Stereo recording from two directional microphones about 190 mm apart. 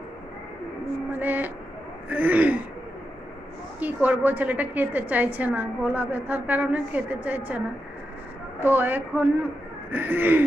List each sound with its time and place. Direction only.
1.1 s a sound: 10° right (ahead or behind)
2.0 s throat clearing: 10° right (ahead or behind)
3.8 s a woman's voice: 10° right (ahead or behind)